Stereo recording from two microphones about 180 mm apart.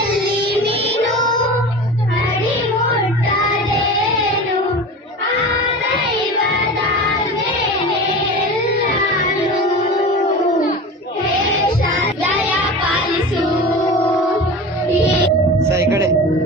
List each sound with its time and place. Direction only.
0.3 s music: 30° right (ahead or behind)
15.7 s music: 15° right (ahead or behind)